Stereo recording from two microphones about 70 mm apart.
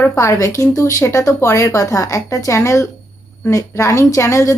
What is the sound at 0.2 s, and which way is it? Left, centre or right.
Speech, left.